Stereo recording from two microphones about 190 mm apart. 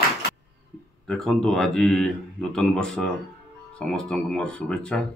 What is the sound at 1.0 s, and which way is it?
Speech, centre (ahead or behind).